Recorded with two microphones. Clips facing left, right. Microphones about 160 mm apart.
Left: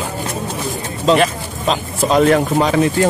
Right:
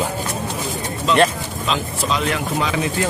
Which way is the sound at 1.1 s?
35° left (ahead or behind).